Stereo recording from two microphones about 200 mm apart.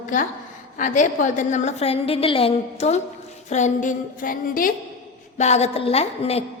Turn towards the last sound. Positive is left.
turn(degrees=30)  # may be behind; listen again after turning